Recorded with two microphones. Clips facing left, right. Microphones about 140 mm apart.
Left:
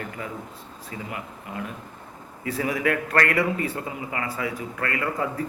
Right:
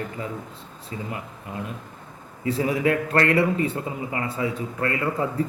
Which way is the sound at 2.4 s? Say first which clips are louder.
Right 3 dB; 25° right (ahead or behind).